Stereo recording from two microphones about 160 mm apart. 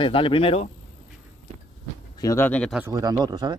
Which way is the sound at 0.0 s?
35° left (ahead or behind).